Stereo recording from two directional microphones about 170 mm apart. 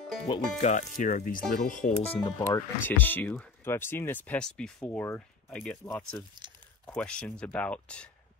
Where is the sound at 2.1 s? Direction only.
30° left (ahead or behind).